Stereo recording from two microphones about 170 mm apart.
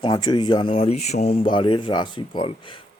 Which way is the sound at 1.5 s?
30° left (ahead or behind).